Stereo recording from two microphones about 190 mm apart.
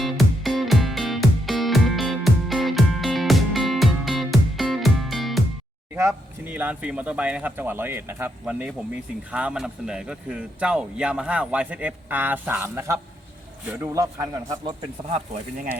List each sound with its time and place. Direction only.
0.0 s music: centre (ahead or behind)
6.0 s a man's voice: 10° right (ahead or behind)
15.1 s speech: 45° right (ahead or behind)